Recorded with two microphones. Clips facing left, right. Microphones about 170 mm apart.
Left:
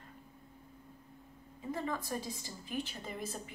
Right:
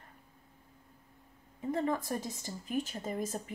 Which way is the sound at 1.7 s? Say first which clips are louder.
Right 5 dB; 50° right (ahead or behind).